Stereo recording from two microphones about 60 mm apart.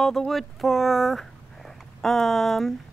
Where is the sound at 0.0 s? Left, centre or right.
Centre.